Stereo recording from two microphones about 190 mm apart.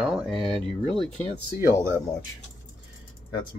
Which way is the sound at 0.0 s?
Centre (ahead or behind).